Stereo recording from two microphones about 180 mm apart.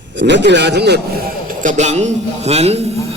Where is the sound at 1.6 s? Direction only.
40° right (ahead or behind).